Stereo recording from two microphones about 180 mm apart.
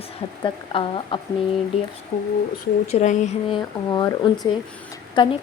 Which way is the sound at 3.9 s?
25° left (ahead or behind).